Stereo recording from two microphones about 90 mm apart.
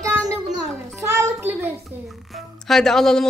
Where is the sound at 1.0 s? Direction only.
30° right (ahead or behind).